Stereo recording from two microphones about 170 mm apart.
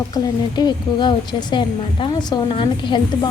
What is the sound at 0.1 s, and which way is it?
A woman's voice, 25° left (ahead or behind).